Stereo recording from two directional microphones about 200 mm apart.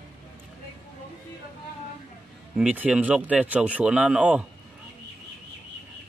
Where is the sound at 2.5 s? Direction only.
5° right (ahead or behind).